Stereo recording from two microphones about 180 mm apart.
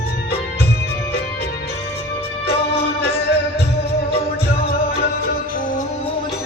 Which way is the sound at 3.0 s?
60° left (ahead or behind).